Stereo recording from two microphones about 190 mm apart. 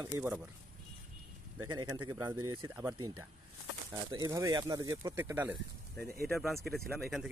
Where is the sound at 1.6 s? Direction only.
15° right (ahead or behind).